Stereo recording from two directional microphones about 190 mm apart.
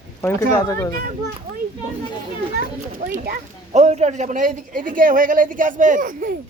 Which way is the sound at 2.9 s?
45° right (ahead or behind).